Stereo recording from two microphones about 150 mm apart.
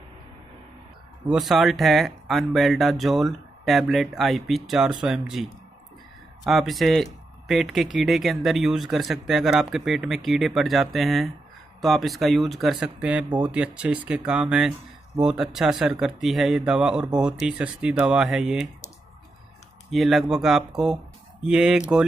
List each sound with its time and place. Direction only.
1.2 s speech: 5° right (ahead or behind)
19.9 s speech: centre (ahead or behind)